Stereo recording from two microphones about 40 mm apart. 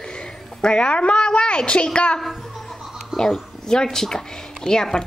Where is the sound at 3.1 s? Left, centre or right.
Centre.